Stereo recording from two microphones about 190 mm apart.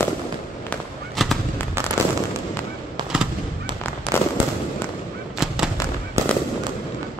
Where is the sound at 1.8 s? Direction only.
15° right (ahead or behind).